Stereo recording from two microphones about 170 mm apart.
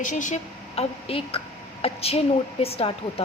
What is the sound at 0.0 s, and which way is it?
Speech, 50° left (ahead or behind).